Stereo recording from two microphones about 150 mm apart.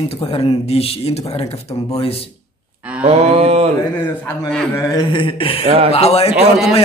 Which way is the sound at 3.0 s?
45° right (ahead or behind).